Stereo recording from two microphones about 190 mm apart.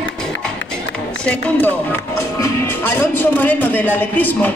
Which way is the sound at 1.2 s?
10° left (ahead or behind).